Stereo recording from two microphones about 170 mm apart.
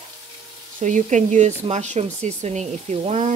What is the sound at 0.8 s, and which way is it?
Speech, 45° right (ahead or behind).